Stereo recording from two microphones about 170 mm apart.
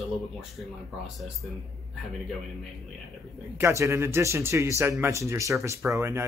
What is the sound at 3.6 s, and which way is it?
Speech, 15° right (ahead or behind).